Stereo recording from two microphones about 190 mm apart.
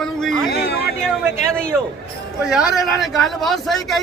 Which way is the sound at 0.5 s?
55° left (ahead or behind).